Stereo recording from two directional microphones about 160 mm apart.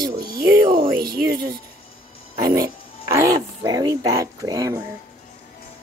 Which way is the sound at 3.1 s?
20° right (ahead or behind).